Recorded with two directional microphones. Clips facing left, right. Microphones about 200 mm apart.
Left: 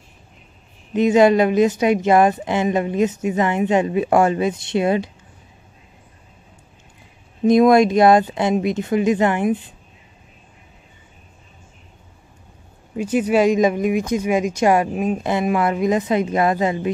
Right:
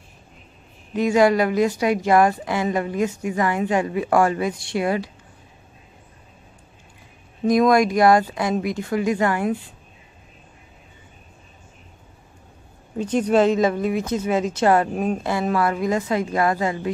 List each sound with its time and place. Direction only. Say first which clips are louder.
0.9 s a woman's voice: left 3 dB; 20° left (ahead or behind)
7.4 s a woman's voice: left 4 dB; 25° left (ahead or behind)
12.9 s speech: left 1 dB; 10° left (ahead or behind)